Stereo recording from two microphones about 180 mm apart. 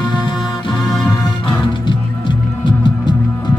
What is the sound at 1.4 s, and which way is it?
Music, 25° left (ahead or behind).